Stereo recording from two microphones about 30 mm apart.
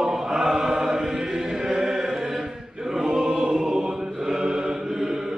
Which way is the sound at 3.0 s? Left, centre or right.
Centre.